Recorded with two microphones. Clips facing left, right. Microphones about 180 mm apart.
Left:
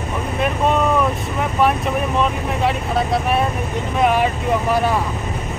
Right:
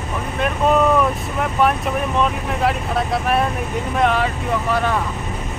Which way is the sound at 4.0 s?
10° left (ahead or behind).